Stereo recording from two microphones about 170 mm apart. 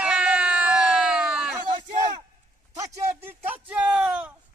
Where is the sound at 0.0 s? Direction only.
5° right (ahead or behind).